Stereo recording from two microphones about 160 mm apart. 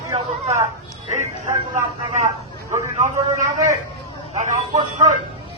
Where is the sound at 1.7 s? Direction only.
50° right (ahead or behind).